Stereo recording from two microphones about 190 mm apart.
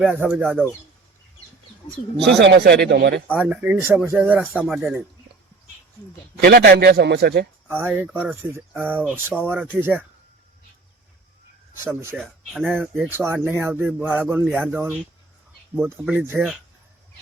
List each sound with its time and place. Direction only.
0.0 s speech: 10° right (ahead or behind)
2.4 s a man's voice: 65° right (ahead or behind)
3.2 s speech: 10° right (ahead or behind)
6.4 s a man's voice: 55° right (ahead or behind)
7.7 s speech: 10° right (ahead or behind)
11.9 s speech: 15° right (ahead or behind)
12.2 s speech: centre (ahead or behind)
13.1 s speech: 10° right (ahead or behind)